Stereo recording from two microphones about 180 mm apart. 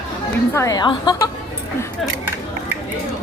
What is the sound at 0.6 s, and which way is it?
Speech, 20° left (ahead or behind).